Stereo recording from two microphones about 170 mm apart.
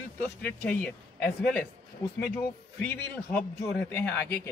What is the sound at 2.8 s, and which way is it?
Speech, 10° left (ahead or behind).